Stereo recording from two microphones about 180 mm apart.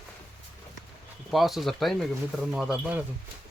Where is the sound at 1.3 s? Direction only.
Centre (ahead or behind).